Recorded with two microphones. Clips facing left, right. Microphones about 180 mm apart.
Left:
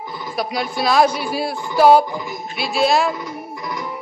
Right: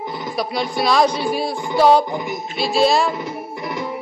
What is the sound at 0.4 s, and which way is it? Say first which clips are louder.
Speech: even; centre (ahead or behind).